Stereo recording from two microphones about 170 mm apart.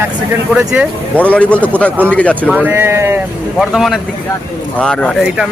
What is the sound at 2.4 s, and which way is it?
Speech, 10° right (ahead or behind).